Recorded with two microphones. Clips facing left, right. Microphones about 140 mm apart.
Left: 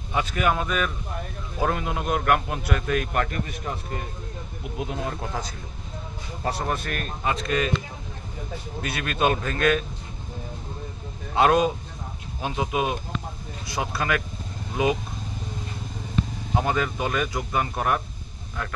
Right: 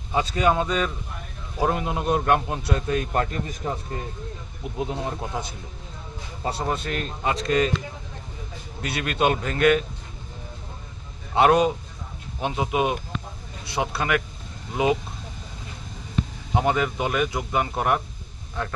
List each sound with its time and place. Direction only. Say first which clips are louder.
0.1 s a man's voice: right 3 dB; 30° right (ahead or behind)
4.7 s a man's voice: right 2 dB; 25° right (ahead or behind)
8.8 s a man's voice: right 1 dB; 30° right (ahead or behind)
11.3 s a man's voice: right 2 dB; 20° right (ahead or behind)
16.5 s a man's voice: right 2 dB; 20° right (ahead or behind)